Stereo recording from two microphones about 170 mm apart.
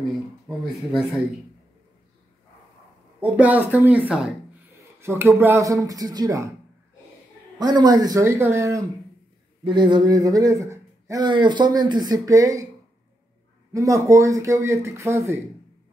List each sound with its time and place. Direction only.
0.1 s speech: 5° right (ahead or behind)
3.2 s speech: 10° right (ahead or behind)
7.5 s speech: 25° right (ahead or behind)
13.7 s speech: 20° right (ahead or behind)